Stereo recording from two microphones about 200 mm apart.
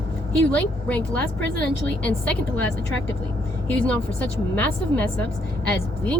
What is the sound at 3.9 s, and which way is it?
A woman's voice, 10° left (ahead or behind).